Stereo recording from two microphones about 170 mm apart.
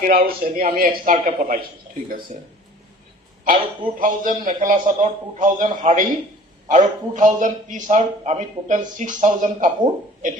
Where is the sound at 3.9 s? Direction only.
55° right (ahead or behind).